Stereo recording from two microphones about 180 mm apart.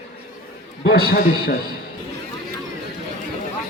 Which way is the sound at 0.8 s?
60° left (ahead or behind).